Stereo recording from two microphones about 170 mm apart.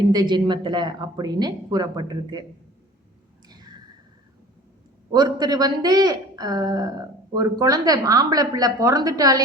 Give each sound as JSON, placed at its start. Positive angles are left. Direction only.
{"t": 0.1, "sound": "a woman's voice", "side_deg": -25}
{"t": 3.5, "sound": "a sound", "side_deg": -25}
{"t": 5.1, "sound": "a woman's voice", "side_deg": -25}